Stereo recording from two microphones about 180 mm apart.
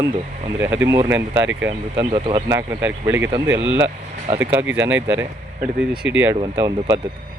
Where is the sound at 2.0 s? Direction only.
25° right (ahead or behind).